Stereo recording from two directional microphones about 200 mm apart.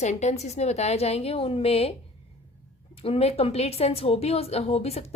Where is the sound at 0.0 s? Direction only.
35° left (ahead or behind).